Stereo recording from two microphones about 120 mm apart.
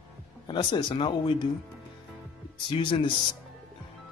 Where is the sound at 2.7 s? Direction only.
40° left (ahead or behind).